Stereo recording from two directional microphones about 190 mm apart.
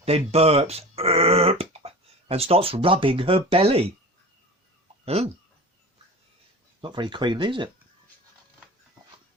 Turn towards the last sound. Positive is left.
turn(degrees=-25)  # may be behind; listen again after turning